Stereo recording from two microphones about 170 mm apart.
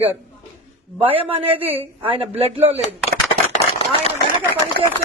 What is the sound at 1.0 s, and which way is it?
A man's voice, 35° right (ahead or behind).